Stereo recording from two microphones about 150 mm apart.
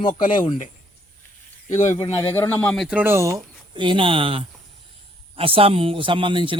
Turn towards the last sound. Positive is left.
turn(degrees=-35)  # may be behind; listen again after turning